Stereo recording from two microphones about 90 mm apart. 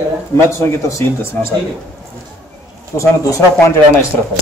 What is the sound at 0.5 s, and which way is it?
Speech, 30° left (ahead or behind).